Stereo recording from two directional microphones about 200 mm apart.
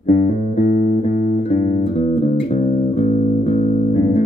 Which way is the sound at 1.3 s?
35° left (ahead or behind).